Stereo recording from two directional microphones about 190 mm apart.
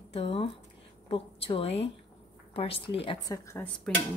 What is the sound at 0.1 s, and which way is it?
A woman's voice, 30° left (ahead or behind).